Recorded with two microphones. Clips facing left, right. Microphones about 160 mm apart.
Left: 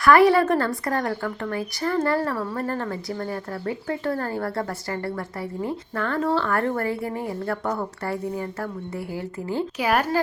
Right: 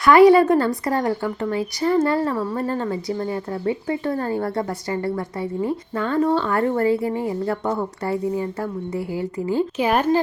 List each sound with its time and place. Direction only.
0.0 s speech: 20° right (ahead or behind)
9.1 s speech: 15° right (ahead or behind)